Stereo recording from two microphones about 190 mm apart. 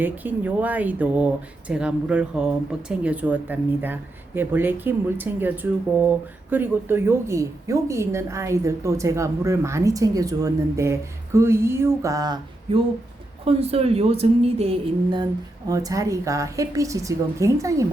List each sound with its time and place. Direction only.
0.0 s a woman's voice: 10° right (ahead or behind)
13.4 s a woman's voice: 30° right (ahead or behind); by 17.8 s 15° right (ahead or behind)